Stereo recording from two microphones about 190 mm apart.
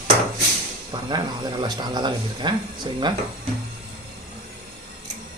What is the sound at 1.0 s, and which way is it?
Speech, 20° right (ahead or behind).